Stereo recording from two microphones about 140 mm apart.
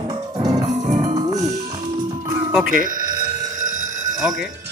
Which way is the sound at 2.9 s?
25° right (ahead or behind).